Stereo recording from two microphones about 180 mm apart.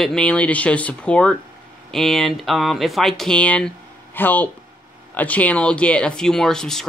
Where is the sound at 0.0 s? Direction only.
5° left (ahead or behind).